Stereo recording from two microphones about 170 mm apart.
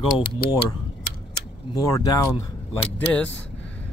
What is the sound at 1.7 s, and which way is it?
Speech, 20° left (ahead or behind).